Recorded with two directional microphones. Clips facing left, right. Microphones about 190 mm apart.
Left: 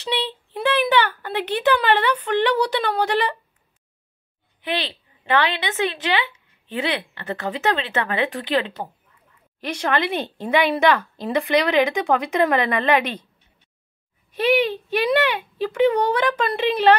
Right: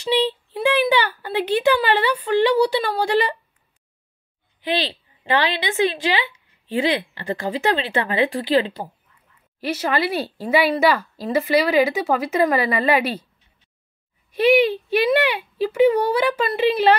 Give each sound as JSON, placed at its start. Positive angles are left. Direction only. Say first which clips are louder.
{"t": 0.0, "sound": "a woman's voice", "louder": "right 6 dB", "side_deg": -10}
{"t": 4.8, "sound": "a sound", "louder": "right 1 dB", "side_deg": -35}
{"t": 5.7, "sound": "a woman's voice", "louder": "right 3 dB", "side_deg": -10}
{"t": 14.3, "sound": "a woman's voice", "louder": "right 4 dB", "side_deg": -10}